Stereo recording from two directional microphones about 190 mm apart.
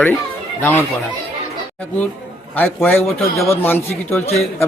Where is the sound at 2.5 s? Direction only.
10° left (ahead or behind).